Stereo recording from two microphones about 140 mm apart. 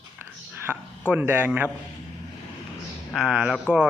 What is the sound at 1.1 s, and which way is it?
Speech, 10° right (ahead or behind).